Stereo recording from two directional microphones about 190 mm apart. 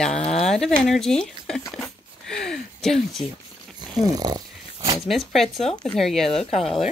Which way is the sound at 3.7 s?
20° right (ahead or behind).